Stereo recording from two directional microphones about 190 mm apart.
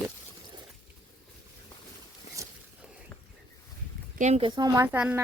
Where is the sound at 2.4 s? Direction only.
15° right (ahead or behind).